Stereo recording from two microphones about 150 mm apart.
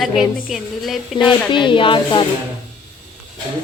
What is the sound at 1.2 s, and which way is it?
Speech, 30° left (ahead or behind).